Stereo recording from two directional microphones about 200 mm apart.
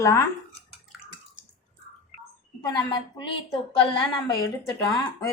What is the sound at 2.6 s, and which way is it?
Speech, 20° left (ahead or behind).